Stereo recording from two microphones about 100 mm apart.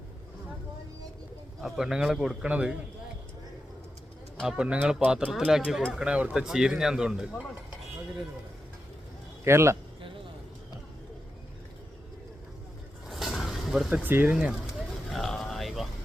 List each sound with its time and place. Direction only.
1.6 s a man's voice: 5° right (ahead or behind)
4.4 s speech: 10° right (ahead or behind)
9.4 s a man's voice: 25° right (ahead or behind)
13.1 s vehicle: centre (ahead or behind)
13.9 s speech: 20° right (ahead or behind)
15.1 s a sound: 5° left (ahead or behind)